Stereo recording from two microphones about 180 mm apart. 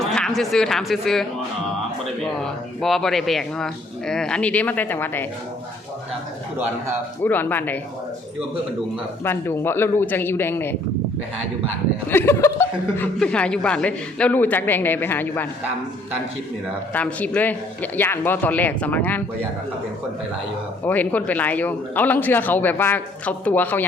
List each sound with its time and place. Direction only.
0.0 s speech: 5° left (ahead or behind)
2.4 s speech: centre (ahead or behind)
7.2 s speech: 10° left (ahead or behind)
9.2 s speech: 15° left (ahead or behind)
12.1 s speech: 15° left (ahead or behind)
16.9 s speech: 10° left (ahead or behind)
20.8 s speech: 10° left (ahead or behind)